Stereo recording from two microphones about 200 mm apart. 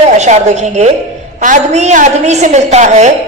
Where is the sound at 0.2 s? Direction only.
35° right (ahead or behind).